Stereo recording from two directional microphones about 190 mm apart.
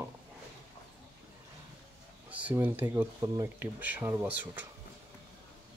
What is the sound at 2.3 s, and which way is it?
Speech, 10° right (ahead or behind).